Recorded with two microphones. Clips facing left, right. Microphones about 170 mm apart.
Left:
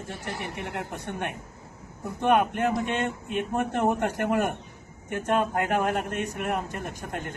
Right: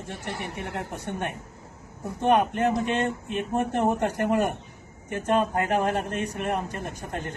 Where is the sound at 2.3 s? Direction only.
20° right (ahead or behind).